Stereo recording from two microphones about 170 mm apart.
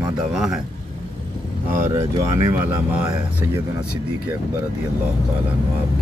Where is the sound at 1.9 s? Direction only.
20° right (ahead or behind).